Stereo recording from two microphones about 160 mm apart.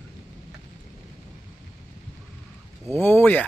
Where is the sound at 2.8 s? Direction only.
15° left (ahead or behind).